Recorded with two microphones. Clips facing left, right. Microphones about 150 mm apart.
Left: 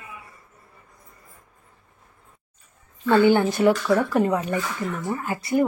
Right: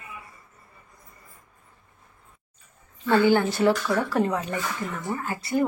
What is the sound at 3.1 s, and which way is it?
A woman's voice, 15° left (ahead or behind).